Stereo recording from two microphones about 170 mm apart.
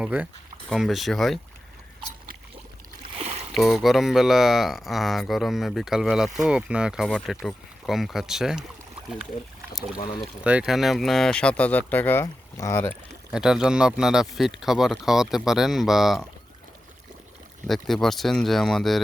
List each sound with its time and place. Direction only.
0.0 s speech: 10° right (ahead or behind)
3.2 s boat: 35° right (ahead or behind)
3.5 s speech: centre (ahead or behind)
10.4 s speech: 5° right (ahead or behind); by 13.0 s 15° left (ahead or behind)
13.3 s speech: 5° right (ahead or behind)
17.7 s speech: centre (ahead or behind)